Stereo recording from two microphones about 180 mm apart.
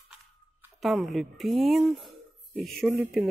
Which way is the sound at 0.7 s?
Centre (ahead or behind).